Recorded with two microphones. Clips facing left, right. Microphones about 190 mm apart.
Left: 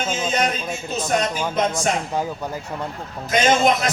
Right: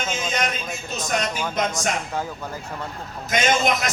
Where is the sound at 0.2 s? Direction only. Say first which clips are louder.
Left 4 dB; 30° left (ahead or behind).